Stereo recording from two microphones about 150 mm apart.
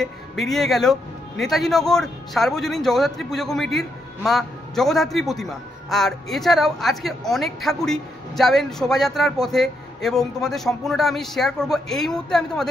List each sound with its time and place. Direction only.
0.0 s a man's voice: centre (ahead or behind)